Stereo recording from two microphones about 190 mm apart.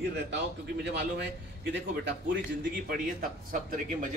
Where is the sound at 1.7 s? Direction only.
65° right (ahead or behind).